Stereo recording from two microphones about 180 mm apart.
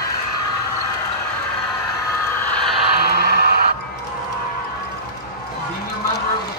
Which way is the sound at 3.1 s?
60° right (ahead or behind).